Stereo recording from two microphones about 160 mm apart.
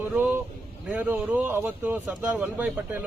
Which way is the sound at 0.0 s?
10° right (ahead or behind).